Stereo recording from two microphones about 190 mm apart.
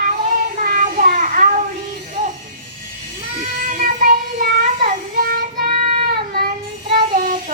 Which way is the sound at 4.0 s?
45° right (ahead or behind).